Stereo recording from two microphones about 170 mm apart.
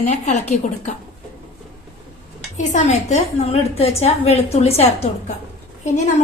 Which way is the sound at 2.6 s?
40° left (ahead or behind).